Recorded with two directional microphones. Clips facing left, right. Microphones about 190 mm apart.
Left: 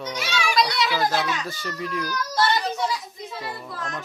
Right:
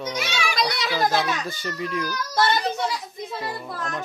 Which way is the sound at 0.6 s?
45° right (ahead or behind).